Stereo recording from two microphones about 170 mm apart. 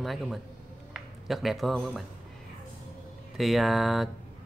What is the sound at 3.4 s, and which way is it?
Speech, centre (ahead or behind).